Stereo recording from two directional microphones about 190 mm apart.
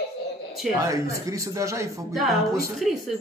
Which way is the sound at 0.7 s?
15° right (ahead or behind).